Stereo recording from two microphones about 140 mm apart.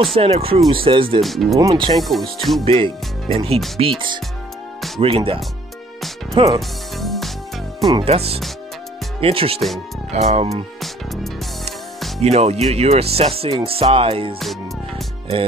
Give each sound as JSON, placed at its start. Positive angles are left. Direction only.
{"t": 0.0, "sound": "speech", "side_deg": -40}
{"t": 1.2, "sound": "speech", "side_deg": 0}
{"t": 1.6, "sound": "speech", "side_deg": -30}
{"t": 2.0, "sound": "speech", "side_deg": 0}
{"t": 2.6, "sound": "speech", "side_deg": -40}
{"t": 5.0, "sound": "speech", "side_deg": -40}
{"t": 7.0, "sound": "music", "side_deg": 0}
{"t": 8.0, "sound": "speech", "side_deg": -45}
{"t": 12.2, "sound": "speech", "side_deg": -50}